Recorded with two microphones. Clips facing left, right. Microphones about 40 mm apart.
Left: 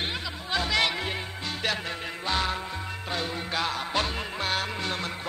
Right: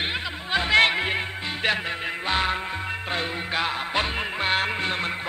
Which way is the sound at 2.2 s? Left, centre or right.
Right.